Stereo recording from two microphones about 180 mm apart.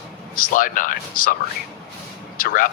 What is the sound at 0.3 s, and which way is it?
Speech, 50° left (ahead or behind).